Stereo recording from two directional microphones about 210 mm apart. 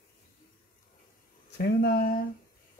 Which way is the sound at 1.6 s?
45° left (ahead or behind).